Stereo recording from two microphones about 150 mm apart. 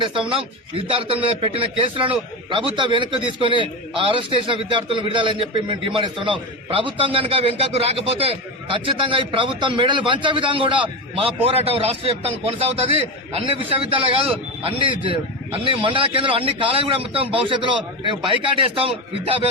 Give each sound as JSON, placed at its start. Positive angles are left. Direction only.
{"t": 0.0, "sound": "a man's voice", "side_deg": -35}